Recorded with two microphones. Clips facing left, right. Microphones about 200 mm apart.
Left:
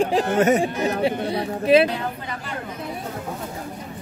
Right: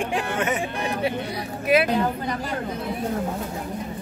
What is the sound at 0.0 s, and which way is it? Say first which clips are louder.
Speech: left 7 dB; 35° left (ahead or behind).